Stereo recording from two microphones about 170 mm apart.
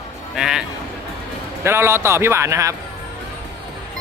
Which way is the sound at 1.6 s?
15° right (ahead or behind).